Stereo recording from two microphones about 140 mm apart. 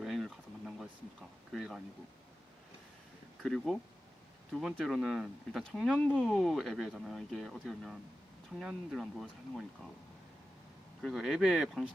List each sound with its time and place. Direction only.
0.0 s a sound: centre (ahead or behind)
3.4 s speech: 5° left (ahead or behind)
11.0 s speech: centre (ahead or behind)